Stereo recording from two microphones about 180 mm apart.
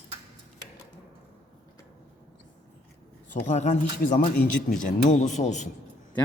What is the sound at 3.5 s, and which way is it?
Speech, 40° left (ahead or behind).